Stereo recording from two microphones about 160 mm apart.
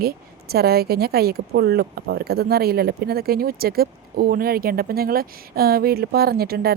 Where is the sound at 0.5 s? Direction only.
75° right (ahead or behind).